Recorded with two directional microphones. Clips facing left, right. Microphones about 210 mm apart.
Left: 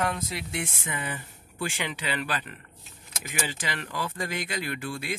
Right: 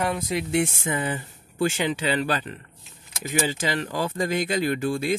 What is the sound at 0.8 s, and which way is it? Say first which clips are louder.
Speech: right 8 dB; 30° right (ahead or behind).